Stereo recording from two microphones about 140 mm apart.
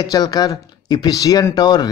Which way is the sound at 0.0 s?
30° left (ahead or behind).